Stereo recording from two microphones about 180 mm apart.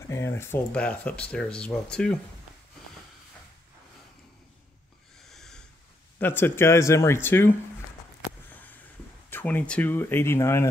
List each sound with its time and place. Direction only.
0.1 s speech: 15° left (ahead or behind)
5.3 s sniff: 5° left (ahead or behind)
6.1 s speech: 10° left (ahead or behind)
9.3 s speech: 10° left (ahead or behind)